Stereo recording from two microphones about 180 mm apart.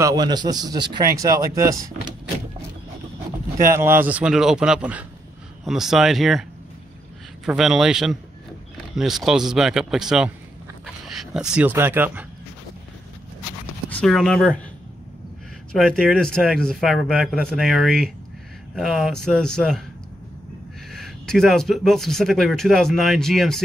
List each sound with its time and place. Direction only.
0.0 s a man's voice: 20° right (ahead or behind)
3.5 s speech: 15° right (ahead or behind)
7.4 s speech: centre (ahead or behind)
13.8 s speech: 5° left (ahead or behind)
15.7 s speech: centre (ahead or behind)
20.9 s speech: centre (ahead or behind)